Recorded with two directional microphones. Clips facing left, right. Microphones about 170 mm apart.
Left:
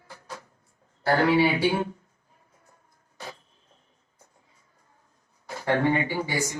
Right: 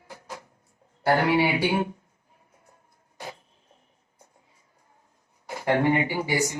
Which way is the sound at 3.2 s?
15° right (ahead or behind).